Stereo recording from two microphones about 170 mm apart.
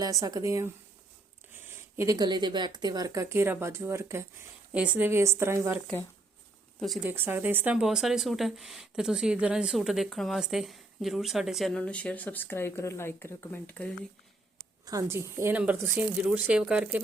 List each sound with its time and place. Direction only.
0.0 s speech: 20° right (ahead or behind)
6.7 s speech: centre (ahead or behind)
7.1 s speech: 10° right (ahead or behind); by 14.1 s 5° left (ahead or behind)
14.8 s speech: 20° right (ahead or behind)